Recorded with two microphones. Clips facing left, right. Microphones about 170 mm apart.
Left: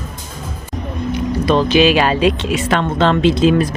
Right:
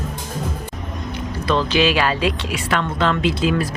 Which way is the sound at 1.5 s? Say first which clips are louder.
Left 5 dB; 15° left (ahead or behind).